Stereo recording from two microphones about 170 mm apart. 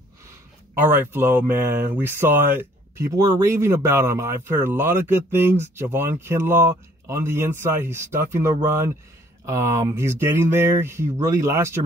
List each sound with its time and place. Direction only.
0.7 s speech: 10° right (ahead or behind)